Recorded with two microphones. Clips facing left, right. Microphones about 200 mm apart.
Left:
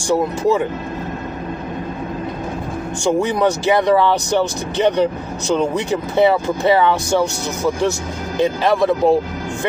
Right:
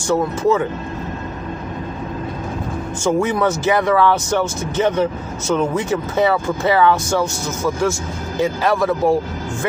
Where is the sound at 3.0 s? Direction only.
15° left (ahead or behind).